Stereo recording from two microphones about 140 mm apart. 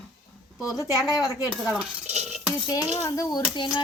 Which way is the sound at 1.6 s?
5° right (ahead or behind).